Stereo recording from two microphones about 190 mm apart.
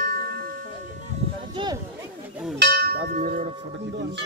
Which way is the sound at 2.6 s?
50° right (ahead or behind).